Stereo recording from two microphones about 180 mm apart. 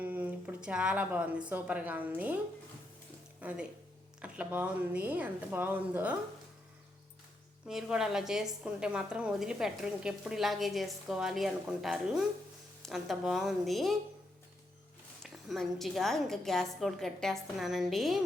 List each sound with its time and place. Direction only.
0.0 s speech: 10° right (ahead or behind)
3.4 s speech: 10° right (ahead or behind)
7.7 s a woman's voice: 5° right (ahead or behind)
15.2 s a woman's voice: centre (ahead or behind)